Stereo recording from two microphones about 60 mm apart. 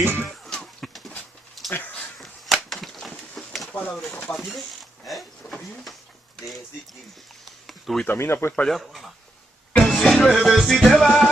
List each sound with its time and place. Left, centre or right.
0.0 s cough: right
0.3 s a sound: centre
7.4 s a sound: centre
8.1 s speech: left
8.6 s speech: centre
9.8 s music: centre